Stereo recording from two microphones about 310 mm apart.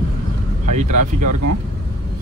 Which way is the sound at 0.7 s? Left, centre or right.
Right.